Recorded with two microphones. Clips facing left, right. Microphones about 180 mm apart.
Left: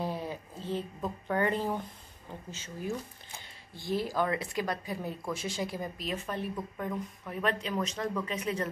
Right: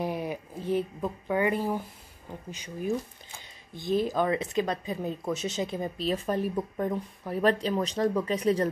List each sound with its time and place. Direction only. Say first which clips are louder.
0.0 s speech: right 4 dB; 15° right (ahead or behind); by 8.6 s 35° right (ahead or behind)